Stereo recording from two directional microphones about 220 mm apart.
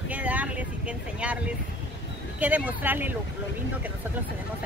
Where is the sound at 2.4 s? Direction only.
5° right (ahead or behind).